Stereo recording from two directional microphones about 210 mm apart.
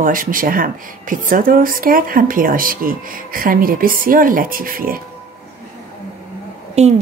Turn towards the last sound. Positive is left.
turn(degrees=-30)  # may be behind; listen again after turning